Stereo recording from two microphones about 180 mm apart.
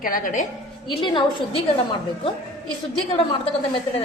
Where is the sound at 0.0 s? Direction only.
50° left (ahead or behind).